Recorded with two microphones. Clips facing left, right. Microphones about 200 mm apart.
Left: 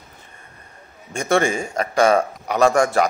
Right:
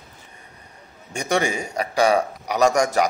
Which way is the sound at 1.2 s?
15° right (ahead or behind).